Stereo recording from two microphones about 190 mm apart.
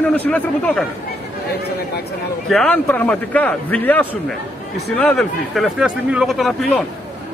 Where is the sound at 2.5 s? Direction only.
5° left (ahead or behind).